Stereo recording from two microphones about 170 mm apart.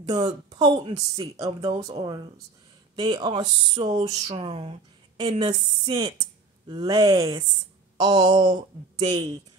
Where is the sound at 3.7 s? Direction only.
40° right (ahead or behind).